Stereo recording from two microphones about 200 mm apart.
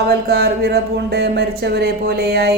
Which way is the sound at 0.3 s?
50° right (ahead or behind).